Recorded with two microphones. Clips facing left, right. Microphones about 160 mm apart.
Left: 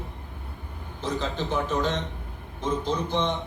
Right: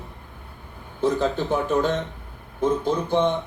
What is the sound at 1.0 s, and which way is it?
A man's voice, 50° right (ahead or behind).